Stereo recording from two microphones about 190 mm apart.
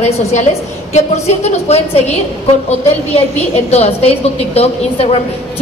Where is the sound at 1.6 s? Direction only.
35° left (ahead or behind).